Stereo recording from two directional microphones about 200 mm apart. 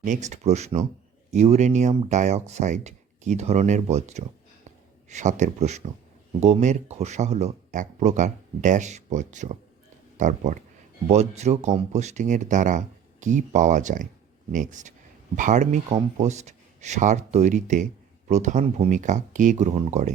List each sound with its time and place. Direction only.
0.0 s speech: 40° right (ahead or behind)